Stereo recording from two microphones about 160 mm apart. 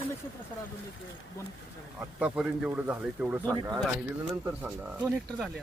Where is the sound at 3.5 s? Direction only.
20° right (ahead or behind).